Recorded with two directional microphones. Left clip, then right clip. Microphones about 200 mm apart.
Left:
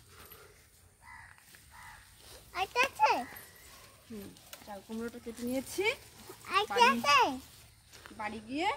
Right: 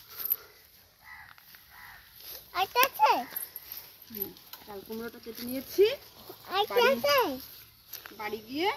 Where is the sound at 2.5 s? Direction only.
35° right (ahead or behind).